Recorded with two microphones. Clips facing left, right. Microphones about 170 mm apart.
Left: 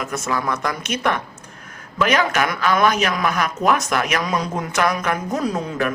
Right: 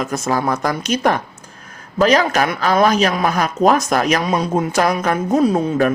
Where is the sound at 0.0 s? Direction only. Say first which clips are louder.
Right 5 dB; 35° right (ahead or behind).